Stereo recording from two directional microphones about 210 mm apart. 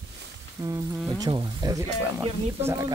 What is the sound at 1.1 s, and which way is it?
Speech, 20° right (ahead or behind).